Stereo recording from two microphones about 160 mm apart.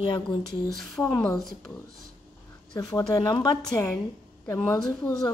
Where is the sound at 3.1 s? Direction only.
25° left (ahead or behind).